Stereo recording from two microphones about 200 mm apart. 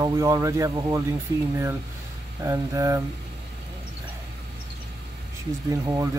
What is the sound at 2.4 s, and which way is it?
Speech, 15° right (ahead or behind).